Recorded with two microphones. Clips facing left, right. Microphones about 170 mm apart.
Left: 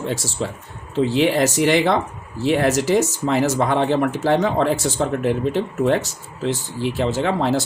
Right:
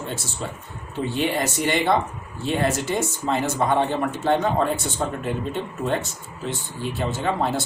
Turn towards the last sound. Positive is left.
turn(degrees=75)  # may be behind; listen again after turning